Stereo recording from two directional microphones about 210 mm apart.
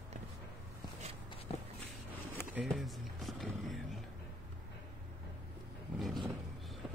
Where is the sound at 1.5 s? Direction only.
30° left (ahead or behind).